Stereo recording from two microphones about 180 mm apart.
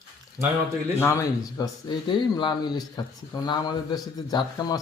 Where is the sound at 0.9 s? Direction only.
15° left (ahead or behind).